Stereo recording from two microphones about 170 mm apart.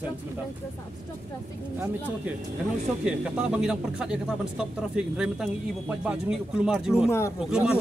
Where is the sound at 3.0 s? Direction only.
5° right (ahead or behind).